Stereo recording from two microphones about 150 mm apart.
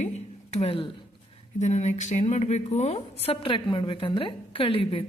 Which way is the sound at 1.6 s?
50° left (ahead or behind).